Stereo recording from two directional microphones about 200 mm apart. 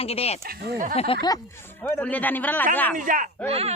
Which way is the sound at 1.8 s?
10° left (ahead or behind).